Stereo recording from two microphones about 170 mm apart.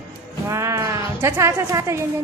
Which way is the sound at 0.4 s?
15° right (ahead or behind).